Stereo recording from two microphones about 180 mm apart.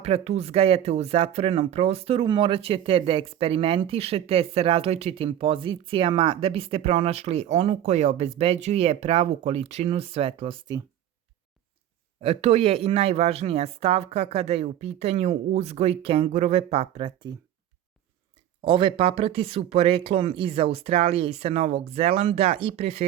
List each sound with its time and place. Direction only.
0.0 s speech: 35° right (ahead or behind)
12.2 s speech: 35° right (ahead or behind)
18.6 s speech: 30° right (ahead or behind)